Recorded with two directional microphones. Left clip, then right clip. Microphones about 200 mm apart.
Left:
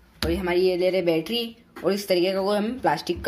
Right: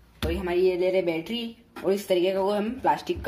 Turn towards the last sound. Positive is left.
turn(degrees=25)  # may be behind; listen again after turning